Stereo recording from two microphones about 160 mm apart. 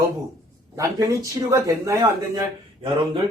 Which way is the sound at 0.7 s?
20° right (ahead or behind).